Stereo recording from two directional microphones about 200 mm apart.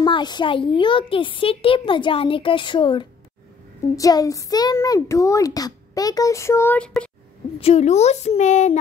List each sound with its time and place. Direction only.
0.0 s a child's voice: 20° left (ahead or behind); by 7.1 s 5° left (ahead or behind)
7.6 s speech: 35° left (ahead or behind)